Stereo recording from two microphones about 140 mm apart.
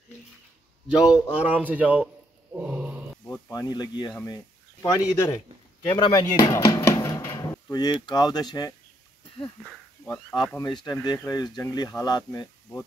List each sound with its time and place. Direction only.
0.8 s a man's voice: 5° right (ahead or behind)
2.5 s a sound: 10° right (ahead or behind)
3.3 s speech: 25° left (ahead or behind)
5.9 s music: 25° left (ahead or behind)
7.7 s speech: 30° left (ahead or behind)
10.3 s speech: 30° left (ahead or behind)